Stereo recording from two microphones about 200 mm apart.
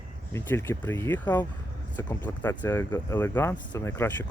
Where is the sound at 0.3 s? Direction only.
15° left (ahead or behind).